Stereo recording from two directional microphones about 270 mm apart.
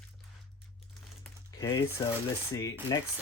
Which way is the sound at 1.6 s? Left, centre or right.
Centre.